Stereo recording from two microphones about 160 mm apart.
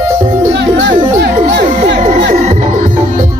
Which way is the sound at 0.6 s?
90° right.